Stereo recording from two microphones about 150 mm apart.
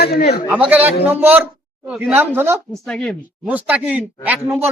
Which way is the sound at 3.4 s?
10° right (ahead or behind).